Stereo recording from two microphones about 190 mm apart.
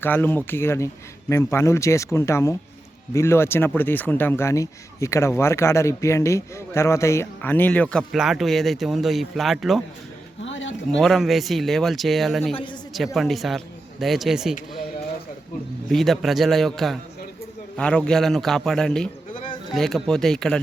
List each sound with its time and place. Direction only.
0.0 s speech: 10° left (ahead or behind)
10.4 s a sound: 80° left
10.9 s speech: centre (ahead or behind)
15.9 s speech: centre (ahead or behind)